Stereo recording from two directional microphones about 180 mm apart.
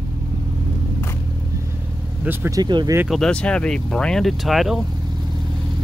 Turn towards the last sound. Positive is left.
turn(degrees=0)  # may be behind; listen again after turning